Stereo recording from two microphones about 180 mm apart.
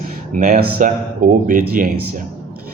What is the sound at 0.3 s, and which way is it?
Speech, 45° right (ahead or behind).